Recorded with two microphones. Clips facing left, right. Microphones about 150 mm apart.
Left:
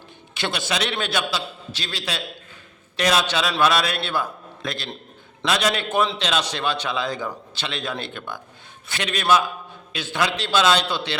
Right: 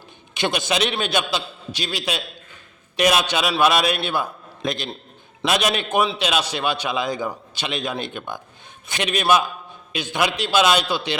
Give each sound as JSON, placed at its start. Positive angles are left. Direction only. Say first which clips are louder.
{"t": 0.3, "sound": "a man's voice", "louder": "right 4 dB", "side_deg": -15}